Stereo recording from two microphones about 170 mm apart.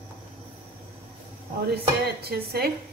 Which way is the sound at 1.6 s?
70° right (ahead or behind).